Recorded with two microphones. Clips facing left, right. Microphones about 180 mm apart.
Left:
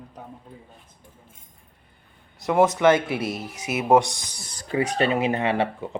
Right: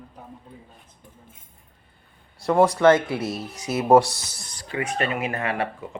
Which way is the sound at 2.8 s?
25° left (ahead or behind).